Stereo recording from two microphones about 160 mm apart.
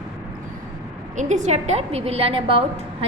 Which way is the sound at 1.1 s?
50° right (ahead or behind).